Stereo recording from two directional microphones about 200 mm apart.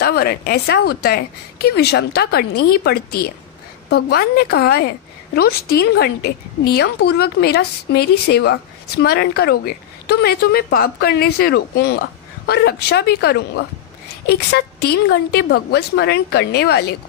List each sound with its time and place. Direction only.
0.0 s a woman's voice: 50° left (ahead or behind)